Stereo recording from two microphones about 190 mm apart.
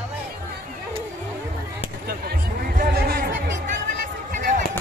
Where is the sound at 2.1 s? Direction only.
50° right (ahead or behind).